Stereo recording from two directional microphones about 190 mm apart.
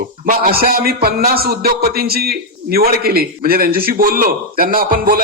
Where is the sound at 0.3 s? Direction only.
50° right (ahead or behind).